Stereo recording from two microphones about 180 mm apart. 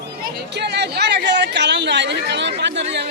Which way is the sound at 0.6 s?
70° right (ahead or behind).